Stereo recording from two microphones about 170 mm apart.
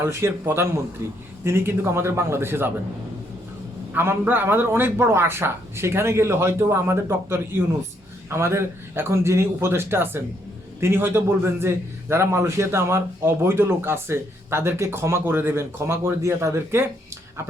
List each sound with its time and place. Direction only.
0.0 s a man's voice: 15° right (ahead or behind)
3.9 s a man's voice: 15° right (ahead or behind)